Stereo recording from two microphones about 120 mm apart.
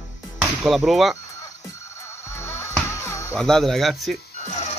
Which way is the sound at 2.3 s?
20° left (ahead or behind).